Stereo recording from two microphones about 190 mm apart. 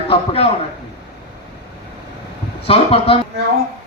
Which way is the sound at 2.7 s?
30° left (ahead or behind).